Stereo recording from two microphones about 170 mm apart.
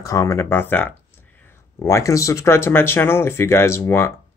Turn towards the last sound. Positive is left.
turn(degrees=15)  # may be behind; listen again after turning